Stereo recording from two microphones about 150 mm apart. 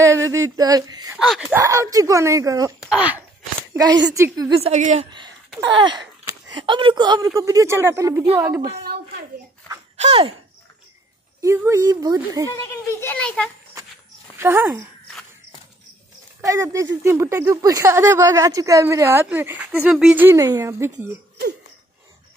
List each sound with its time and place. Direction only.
0.0 s speech: 20° right (ahead or behind)
1.1 s speech: centre (ahead or behind)
1.5 s speech: 20° right (ahead or behind)
2.8 s speech: 10° right (ahead or behind)
3.7 s speech: 25° right (ahead or behind)
4.5 s a woman's voice: 45° right (ahead or behind)
5.7 s speech: 30° right (ahead or behind)
9.9 s speech: 45° right (ahead or behind)
11.4 s speech: 15° right (ahead or behind)
12.4 s a child's voice: 15° left (ahead or behind)
14.4 s speech: 15° right (ahead or behind)
16.3 s speech: 20° right (ahead or behind)
20.3 s speech: 20° right (ahead or behind)